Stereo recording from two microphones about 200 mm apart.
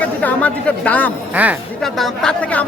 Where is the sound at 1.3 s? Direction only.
5° right (ahead or behind).